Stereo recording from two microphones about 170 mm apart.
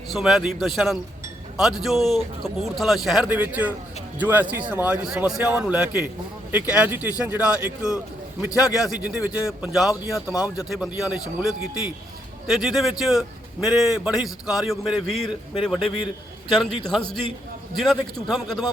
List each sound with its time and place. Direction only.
0.1 s a man's voice: centre (ahead or behind)
16.6 s a man's voice: 5° left (ahead or behind)